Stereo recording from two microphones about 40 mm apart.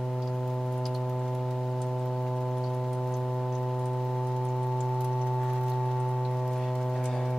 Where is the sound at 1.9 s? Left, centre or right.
Centre.